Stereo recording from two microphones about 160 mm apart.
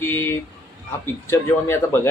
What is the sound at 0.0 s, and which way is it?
Speech, 15° left (ahead or behind).